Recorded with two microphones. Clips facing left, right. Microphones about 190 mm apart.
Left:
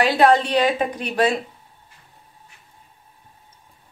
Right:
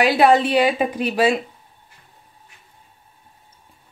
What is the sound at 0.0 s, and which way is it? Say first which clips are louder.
A woman's voice: right 1 dB; 5° right (ahead or behind).